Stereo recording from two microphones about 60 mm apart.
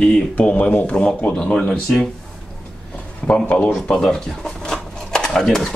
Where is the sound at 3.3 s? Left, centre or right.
Left.